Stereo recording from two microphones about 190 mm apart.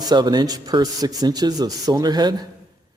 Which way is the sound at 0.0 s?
20° right (ahead or behind).